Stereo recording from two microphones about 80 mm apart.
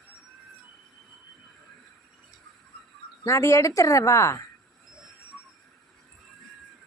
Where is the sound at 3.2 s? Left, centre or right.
Left.